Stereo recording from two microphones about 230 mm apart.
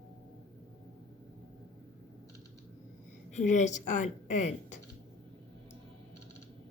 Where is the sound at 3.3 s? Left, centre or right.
Left.